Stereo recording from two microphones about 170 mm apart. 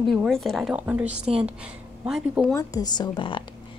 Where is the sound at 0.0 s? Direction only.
Centre (ahead or behind).